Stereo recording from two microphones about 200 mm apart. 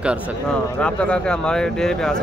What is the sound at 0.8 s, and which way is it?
Speech, 5° left (ahead or behind).